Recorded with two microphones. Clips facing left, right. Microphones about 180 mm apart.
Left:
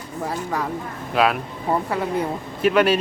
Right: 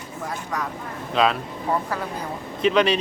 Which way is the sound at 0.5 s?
30° left (ahead or behind).